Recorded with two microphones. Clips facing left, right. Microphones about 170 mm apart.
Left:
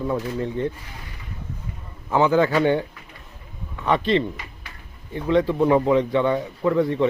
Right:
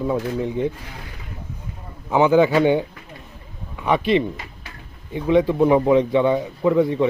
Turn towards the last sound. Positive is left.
turn(degrees=-15)  # may be behind; listen again after turning